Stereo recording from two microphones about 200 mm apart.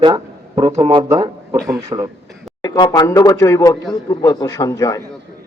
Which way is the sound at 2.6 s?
20° left (ahead or behind).